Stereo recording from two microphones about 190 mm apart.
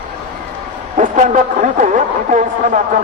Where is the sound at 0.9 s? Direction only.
40° right (ahead or behind).